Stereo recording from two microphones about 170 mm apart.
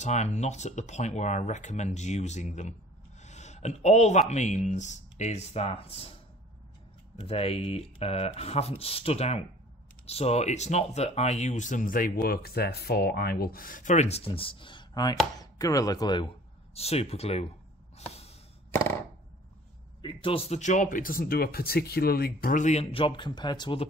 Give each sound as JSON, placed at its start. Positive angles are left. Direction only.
{"t": 0.0, "sound": "speech", "side_deg": 40}
{"t": 7.2, "sound": "speech", "side_deg": 35}
{"t": 16.7, "sound": "speech", "side_deg": 35}
{"t": 17.9, "sound": "snort", "side_deg": 35}
{"t": 20.0, "sound": "speech", "side_deg": 30}